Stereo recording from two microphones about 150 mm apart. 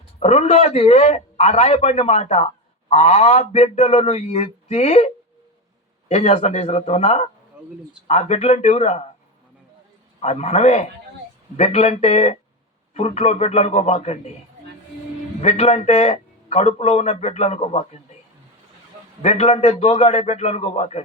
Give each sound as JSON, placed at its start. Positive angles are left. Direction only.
{"t": 0.2, "sound": "a man's voice", "side_deg": 45}
{"t": 10.2, "sound": "a man's voice", "side_deg": 45}
{"t": 15.4, "sound": "a man's voice", "side_deg": 45}
{"t": 19.2, "sound": "a man's voice", "side_deg": 45}